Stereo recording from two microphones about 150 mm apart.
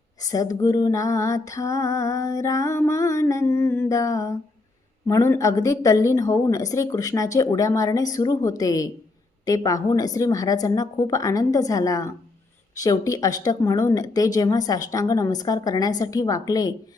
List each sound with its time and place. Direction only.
0.3 s music: 25° left (ahead or behind)